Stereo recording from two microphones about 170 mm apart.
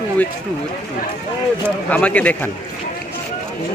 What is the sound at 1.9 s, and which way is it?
Speech, 10° left (ahead or behind).